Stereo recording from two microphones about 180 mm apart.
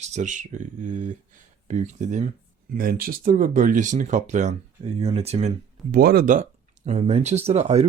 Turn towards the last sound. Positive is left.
turn(degrees=-35)  # may be behind; listen again after turning